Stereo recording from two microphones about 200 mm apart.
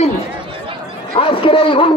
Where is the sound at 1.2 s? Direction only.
25° left (ahead or behind).